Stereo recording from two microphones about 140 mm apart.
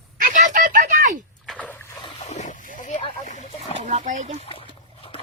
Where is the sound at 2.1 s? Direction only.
55° left (ahead or behind).